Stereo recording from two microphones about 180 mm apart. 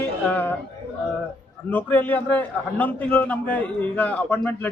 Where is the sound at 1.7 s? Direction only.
10° left (ahead or behind).